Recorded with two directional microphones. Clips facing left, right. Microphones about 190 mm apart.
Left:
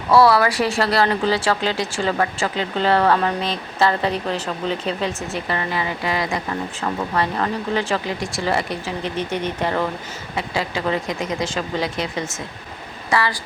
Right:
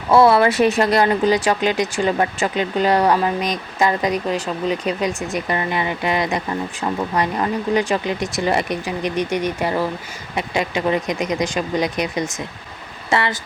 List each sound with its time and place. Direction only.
0.1 s speech: 20° right (ahead or behind)